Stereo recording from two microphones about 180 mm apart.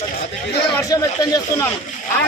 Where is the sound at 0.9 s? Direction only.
20° left (ahead or behind).